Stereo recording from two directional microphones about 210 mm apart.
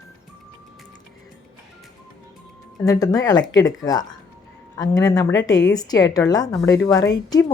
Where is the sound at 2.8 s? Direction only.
15° left (ahead or behind).